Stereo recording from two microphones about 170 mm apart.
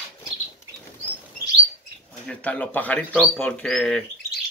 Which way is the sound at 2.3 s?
10° left (ahead or behind).